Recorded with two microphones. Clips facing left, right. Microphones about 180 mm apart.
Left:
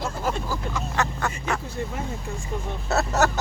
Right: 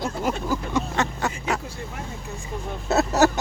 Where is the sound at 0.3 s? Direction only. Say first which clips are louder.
Right 2 dB; 20° right (ahead or behind).